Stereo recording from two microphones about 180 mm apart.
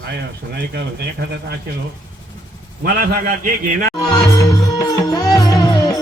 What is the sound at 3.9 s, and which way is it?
Music, 20° left (ahead or behind).